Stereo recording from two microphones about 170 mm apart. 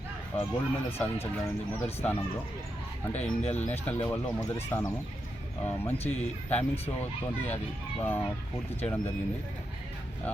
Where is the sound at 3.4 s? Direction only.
40° left (ahead or behind).